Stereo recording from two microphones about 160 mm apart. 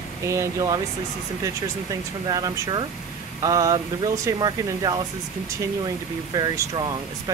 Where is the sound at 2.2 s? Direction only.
25° right (ahead or behind).